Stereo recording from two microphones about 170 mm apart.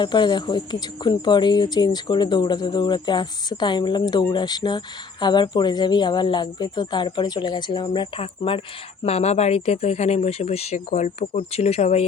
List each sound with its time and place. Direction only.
0.0 s speech: 25° left (ahead or behind)